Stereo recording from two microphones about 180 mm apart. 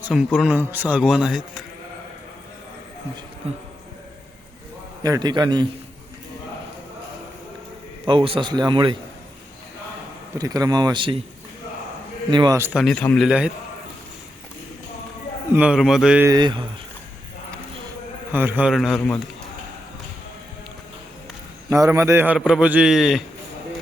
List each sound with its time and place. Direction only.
0.0 s a man's voice: centre (ahead or behind)
5.0 s a man's voice: 20° right (ahead or behind)
8.0 s a man's voice: 30° right (ahead or behind)
10.3 s a man's voice: 20° right (ahead or behind)
12.3 s a man's voice: 20° right (ahead or behind)
12.7 s a man's voice: 5° left (ahead or behind)
15.5 s a man's voice: 5° right (ahead or behind)
16.2 s a man's voice: 20° right (ahead or behind)
18.3 s a man's voice: 10° right (ahead or behind); by 19.2 s 10° left (ahead or behind)
21.7 s a man's voice: 15° right (ahead or behind)